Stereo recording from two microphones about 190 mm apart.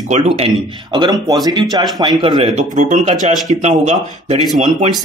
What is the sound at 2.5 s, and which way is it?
Speech, 40° right (ahead or behind).